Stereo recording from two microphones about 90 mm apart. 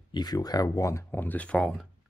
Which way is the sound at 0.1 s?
50° left (ahead or behind).